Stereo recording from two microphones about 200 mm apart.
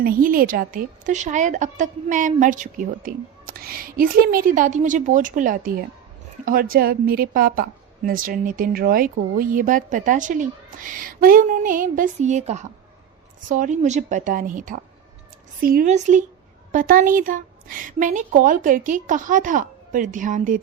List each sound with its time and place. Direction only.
0.0 s a woman's voice: 45° right (ahead or behind)